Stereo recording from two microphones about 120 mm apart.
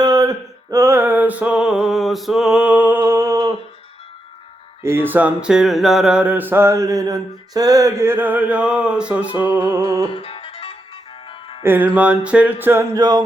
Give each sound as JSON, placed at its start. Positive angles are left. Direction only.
{"t": 0.0, "sound": "music", "side_deg": -30}
{"t": 4.8, "sound": "mantra", "side_deg": -20}
{"t": 9.7, "sound": "music", "side_deg": -25}
{"t": 10.1, "sound": "music", "side_deg": 50}
{"t": 11.6, "sound": "mantra", "side_deg": -15}
{"t": 12.9, "sound": "a sound", "side_deg": -30}